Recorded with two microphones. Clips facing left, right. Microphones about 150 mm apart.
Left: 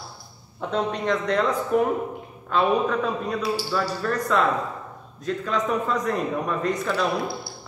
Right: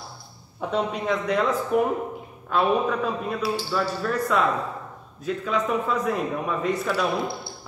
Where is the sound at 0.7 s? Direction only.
5° right (ahead or behind).